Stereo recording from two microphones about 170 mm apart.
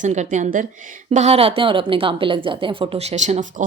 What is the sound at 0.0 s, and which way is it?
A woman's voice, 45° right (ahead or behind).